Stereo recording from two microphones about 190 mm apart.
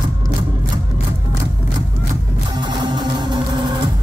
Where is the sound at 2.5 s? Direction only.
25° right (ahead or behind).